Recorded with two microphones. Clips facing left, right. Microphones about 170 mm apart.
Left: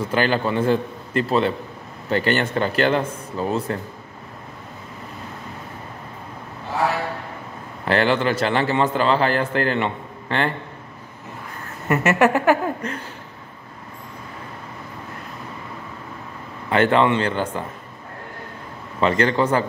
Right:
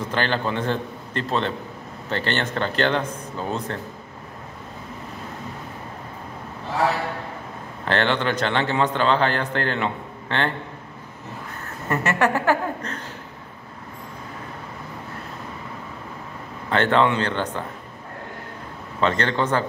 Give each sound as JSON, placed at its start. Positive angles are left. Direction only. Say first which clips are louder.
{"t": 0.1, "sound": "speech", "louder": "left 4 dB", "side_deg": 10}
{"t": 7.8, "sound": "a man's voice", "louder": "left 3 dB", "side_deg": 5}
{"t": 11.9, "sound": "speech", "louder": "left 4 dB", "side_deg": 20}
{"t": 16.7, "sound": "speech", "louder": "left 2 dB", "side_deg": 10}
{"t": 18.9, "sound": "speech", "louder": "left 3 dB", "side_deg": 10}